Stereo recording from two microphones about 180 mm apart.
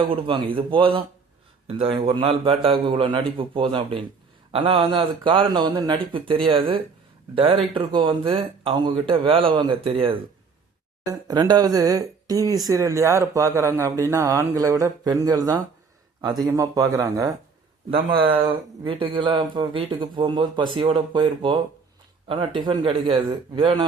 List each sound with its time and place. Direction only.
0.0 s speech: 30° right (ahead or behind)